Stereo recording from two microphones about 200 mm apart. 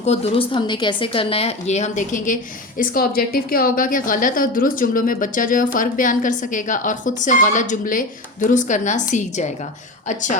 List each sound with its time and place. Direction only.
0.0 s a woman's voice: 30° left (ahead or behind)